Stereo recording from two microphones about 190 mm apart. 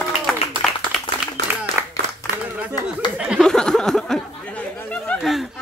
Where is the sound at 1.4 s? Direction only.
60° right (ahead or behind).